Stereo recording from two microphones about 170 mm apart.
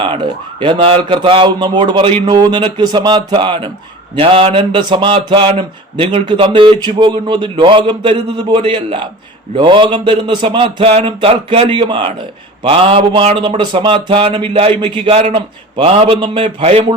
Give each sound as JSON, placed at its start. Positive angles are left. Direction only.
{"t": 0.6, "sound": "speech", "side_deg": -30}